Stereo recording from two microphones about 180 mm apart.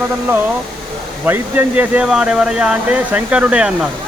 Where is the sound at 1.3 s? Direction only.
10° right (ahead or behind).